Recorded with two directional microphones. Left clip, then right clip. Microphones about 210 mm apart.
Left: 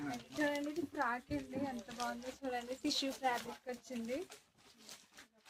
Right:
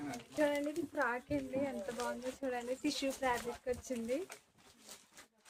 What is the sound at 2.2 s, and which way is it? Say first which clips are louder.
Speech: right 2 dB; 20° right (ahead or behind).